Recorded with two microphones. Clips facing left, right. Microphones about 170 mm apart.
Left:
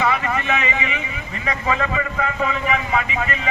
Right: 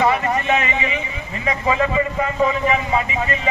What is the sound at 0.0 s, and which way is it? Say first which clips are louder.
A man's voice: right 3 dB; 35° right (ahead or behind).